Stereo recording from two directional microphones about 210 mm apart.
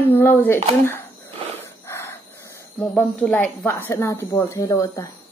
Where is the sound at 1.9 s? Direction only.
10° left (ahead or behind).